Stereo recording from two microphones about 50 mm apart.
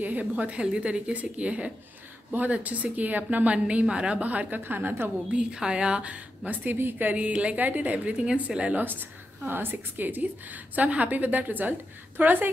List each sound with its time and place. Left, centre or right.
0.0 s a woman's voice: right
5.3 s a woman's voice: centre
9.5 s a woman's voice: right